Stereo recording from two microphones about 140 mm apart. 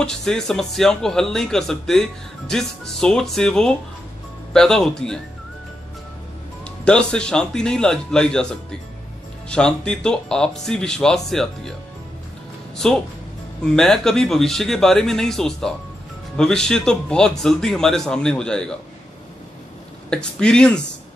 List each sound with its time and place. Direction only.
0.0 s speech: 5° left (ahead or behind)
6.6 s speech: 5° left (ahead or behind)
12.7 s speech: 5° left (ahead or behind)
20.1 s speech: 5° left (ahead or behind)